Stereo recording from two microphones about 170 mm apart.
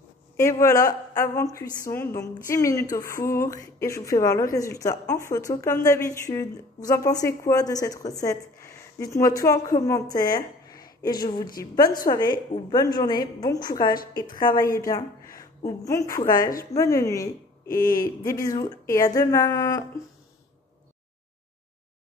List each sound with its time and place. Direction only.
0.4 s a woman's voice: 15° left (ahead or behind)
10.7 s a sound: 20° left (ahead or behind)
11.7 s speech: 25° left (ahead or behind)
13.9 s speech: 60° left (ahead or behind)
14.6 s a woman's voice: 20° left (ahead or behind)
17.6 s speech: 55° left (ahead or behind)
18.2 s speech: 20° left (ahead or behind)